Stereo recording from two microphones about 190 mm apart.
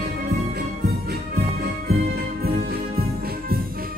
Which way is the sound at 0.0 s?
55° right (ahead or behind).